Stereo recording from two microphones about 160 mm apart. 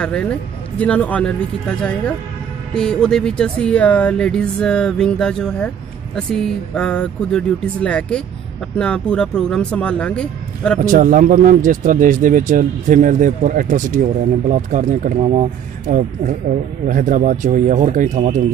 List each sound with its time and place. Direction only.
0.0 s speech: 5° left (ahead or behind)
10.9 s speech: 60° right (ahead or behind); by 15.4 s 40° right (ahead or behind)
16.8 s speech: 55° right (ahead or behind)